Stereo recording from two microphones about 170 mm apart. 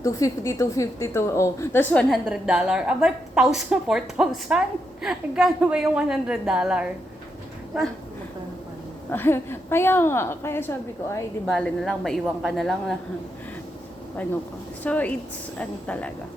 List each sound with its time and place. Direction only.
0.0 s a woman's voice: 20° left (ahead or behind); by 6.9 s 5° right (ahead or behind)
9.0 s a woman's voice: 10° left (ahead or behind)
11.4 s a woman's voice: centre (ahead or behind)
14.8 s a woman's voice: 10° left (ahead or behind)